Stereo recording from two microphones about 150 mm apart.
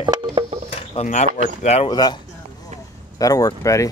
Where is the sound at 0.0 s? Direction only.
30° right (ahead or behind).